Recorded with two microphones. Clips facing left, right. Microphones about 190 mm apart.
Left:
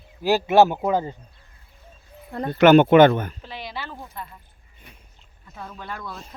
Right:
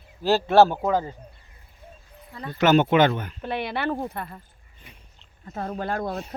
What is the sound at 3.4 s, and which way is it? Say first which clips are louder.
Speech: right 8 dB; 60° right (ahead or behind).